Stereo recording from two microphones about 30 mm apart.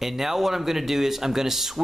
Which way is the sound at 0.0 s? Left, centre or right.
Centre.